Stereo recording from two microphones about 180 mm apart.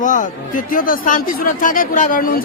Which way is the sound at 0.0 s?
45° left (ahead or behind).